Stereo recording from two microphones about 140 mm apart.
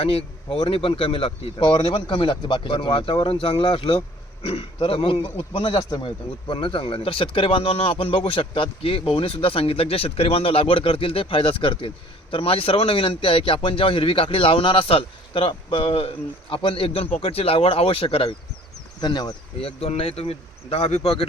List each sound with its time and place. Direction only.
0.0 s speech: 45° left (ahead or behind)
18.9 s speech: 30° left (ahead or behind)
19.6 s speech: 45° left (ahead or behind)